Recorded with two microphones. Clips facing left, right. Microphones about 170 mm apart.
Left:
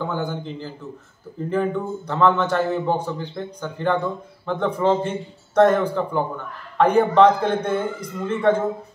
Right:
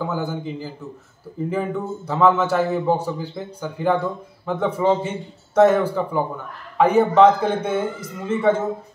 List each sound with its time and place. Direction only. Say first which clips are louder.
0.0 s a man's voice: right 1 dB; 5° right (ahead or behind)